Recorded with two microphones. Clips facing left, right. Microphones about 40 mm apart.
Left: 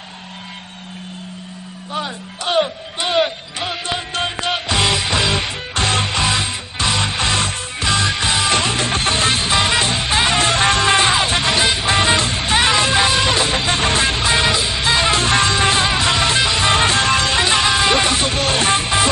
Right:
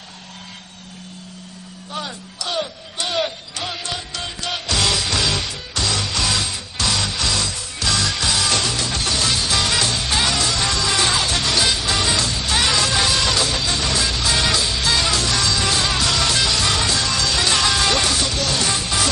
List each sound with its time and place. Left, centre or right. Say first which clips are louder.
2.4 s speech: left 7 dB; left
3.0 s music: left 5 dB; left